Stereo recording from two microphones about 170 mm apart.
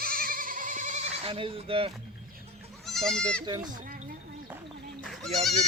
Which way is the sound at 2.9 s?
5° left (ahead or behind).